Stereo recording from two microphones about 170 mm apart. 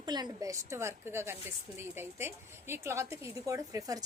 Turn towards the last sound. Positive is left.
turn(degrees=-20)  # may be behind; listen again after turning